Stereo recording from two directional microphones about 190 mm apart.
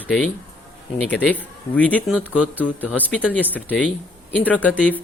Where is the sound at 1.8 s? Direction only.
5° left (ahead or behind).